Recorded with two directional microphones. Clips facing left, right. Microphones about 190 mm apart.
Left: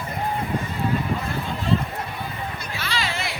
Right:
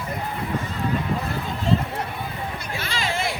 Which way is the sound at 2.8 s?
50° right (ahead or behind).